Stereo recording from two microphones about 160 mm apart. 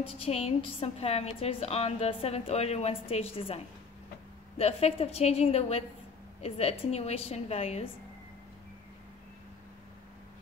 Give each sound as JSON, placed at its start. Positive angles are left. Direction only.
{"t": 0.2, "sound": "a woman's voice", "side_deg": 40}